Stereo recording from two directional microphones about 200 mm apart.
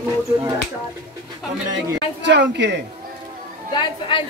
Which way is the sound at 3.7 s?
25° left (ahead or behind).